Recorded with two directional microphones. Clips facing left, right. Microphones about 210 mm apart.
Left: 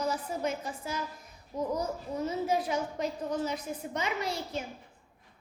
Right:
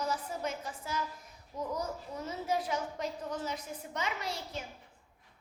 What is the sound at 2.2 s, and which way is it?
A woman's voice, 15° left (ahead or behind).